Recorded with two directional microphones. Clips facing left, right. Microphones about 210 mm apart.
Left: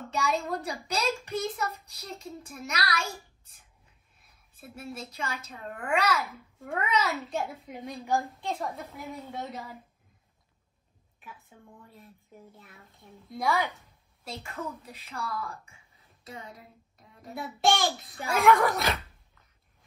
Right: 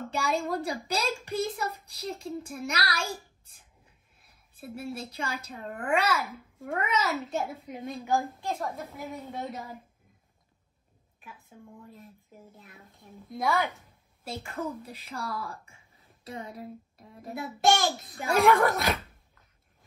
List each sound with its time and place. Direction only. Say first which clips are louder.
0.1 s a woman's voice: even; 30° right (ahead or behind)
3.0 s a child's voice: right 1 dB; centre (ahead or behind)
4.2 s a sound: right 5 dB; 30° right (ahead or behind)
4.9 s a woman's voice: right 2 dB; 30° right (ahead or behind)
6.1 s a child's voice: even; centre (ahead or behind)
11.2 s a child's voice: right 1 dB; centre (ahead or behind)
14.5 s a woman's voice: right 4 dB; 30° right (ahead or behind)
17.3 s a child's voice: right 1 dB; centre (ahead or behind)